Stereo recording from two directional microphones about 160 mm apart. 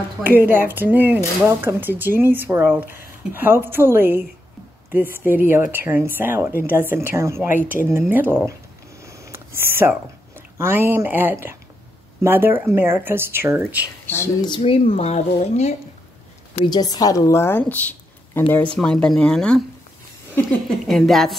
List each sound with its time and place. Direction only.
0.2 s speech: 10° right (ahead or behind)
9.0 s a sound: 20° right (ahead or behind)
9.6 s speech: 15° right (ahead or behind)
14.0 s speech: 15° left (ahead or behind)
14.4 s speech: 30° left (ahead or behind)
16.5 s speech: 25° left (ahead or behind); by 19.6 s 5° left (ahead or behind)
20.8 s speech: centre (ahead or behind)